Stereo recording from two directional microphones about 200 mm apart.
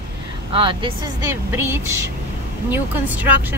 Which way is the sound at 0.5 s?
25° right (ahead or behind).